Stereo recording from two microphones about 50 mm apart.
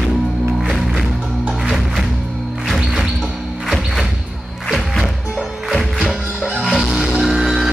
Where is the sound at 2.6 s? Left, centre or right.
Centre.